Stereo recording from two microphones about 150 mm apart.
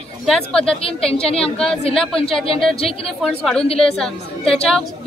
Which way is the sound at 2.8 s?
40° left (ahead or behind).